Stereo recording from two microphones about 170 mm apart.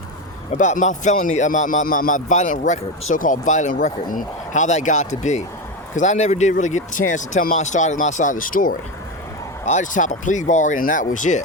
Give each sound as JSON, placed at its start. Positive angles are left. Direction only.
{"t": 0.5, "sound": "speech", "side_deg": 45}